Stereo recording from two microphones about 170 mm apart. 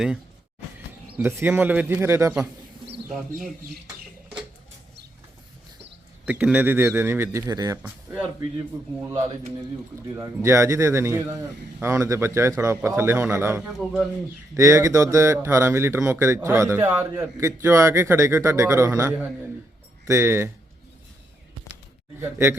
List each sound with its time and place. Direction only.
1.1 s speech: 15° right (ahead or behind)
6.2 s speech: 10° right (ahead or behind)
7.8 s speech: 10° right (ahead or behind)
13.6 s a man's voice: centre (ahead or behind)
14.5 s speech: 20° right (ahead or behind)
22.2 s speech: 15° right (ahead or behind)